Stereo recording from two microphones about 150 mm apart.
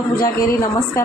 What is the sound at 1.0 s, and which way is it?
Speech, 20° left (ahead or behind).